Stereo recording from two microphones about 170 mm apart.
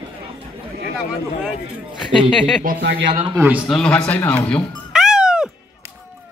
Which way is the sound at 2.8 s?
90° right.